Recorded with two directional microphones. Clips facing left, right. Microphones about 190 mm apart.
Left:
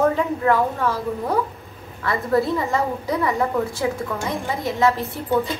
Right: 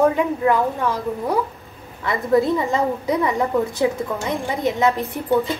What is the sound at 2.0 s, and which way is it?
A woman's voice, 20° right (ahead or behind).